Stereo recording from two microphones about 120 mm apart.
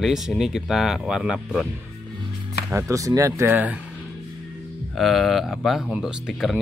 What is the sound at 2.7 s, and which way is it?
Speech, 30° right (ahead or behind).